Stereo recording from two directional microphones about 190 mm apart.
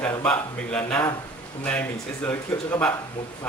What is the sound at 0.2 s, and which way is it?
A man's voice, 5° left (ahead or behind).